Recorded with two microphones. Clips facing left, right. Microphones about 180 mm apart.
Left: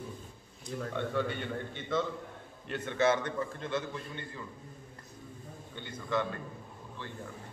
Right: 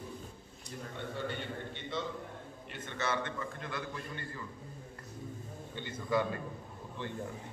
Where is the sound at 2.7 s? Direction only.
70° left (ahead or behind).